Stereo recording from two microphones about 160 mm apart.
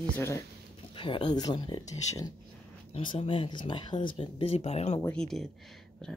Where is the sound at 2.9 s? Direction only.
35° left (ahead or behind).